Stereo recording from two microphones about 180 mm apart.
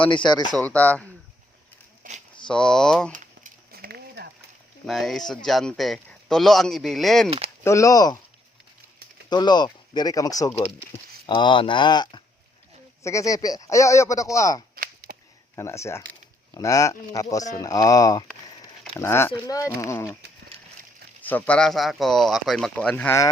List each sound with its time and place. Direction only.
0.0 s speech: 25° left (ahead or behind)
0.5 s a man's voice: 5° left (ahead or behind)
2.5 s speech: 5° left (ahead or behind)
3.1 s a sound: 50° right (ahead or behind)
4.9 s speech: centre (ahead or behind)
7.3 s speech: 35° right (ahead or behind)
7.6 s speech: 15° left (ahead or behind)
9.3 s a man's voice: 25° left (ahead or behind)
21.2 s speech: 10° left (ahead or behind)